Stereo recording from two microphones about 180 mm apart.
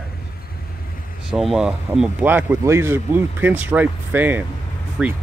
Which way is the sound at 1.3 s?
Centre (ahead or behind).